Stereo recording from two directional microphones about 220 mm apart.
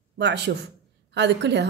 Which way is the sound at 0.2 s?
50° right (ahead or behind).